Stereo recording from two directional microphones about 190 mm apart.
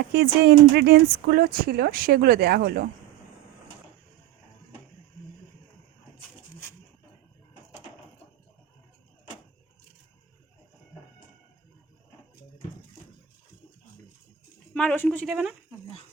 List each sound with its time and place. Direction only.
0.1 s speech: 60° right (ahead or behind)
14.7 s speech: 5° left (ahead or behind)